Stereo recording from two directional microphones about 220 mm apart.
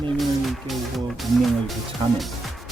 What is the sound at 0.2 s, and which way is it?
Music, centre (ahead or behind).